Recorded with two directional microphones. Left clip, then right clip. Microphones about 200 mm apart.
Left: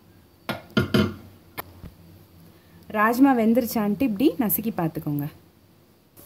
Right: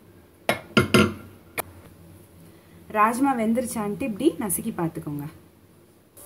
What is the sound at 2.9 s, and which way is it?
A woman's voice, 45° left (ahead or behind).